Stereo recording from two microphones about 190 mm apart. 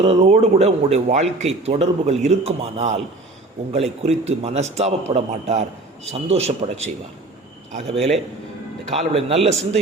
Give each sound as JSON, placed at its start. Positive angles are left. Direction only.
{"t": 0.0, "sound": "speech", "side_deg": -35}